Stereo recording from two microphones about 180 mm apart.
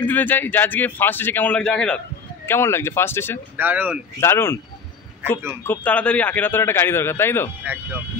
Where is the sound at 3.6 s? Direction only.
10° right (ahead or behind).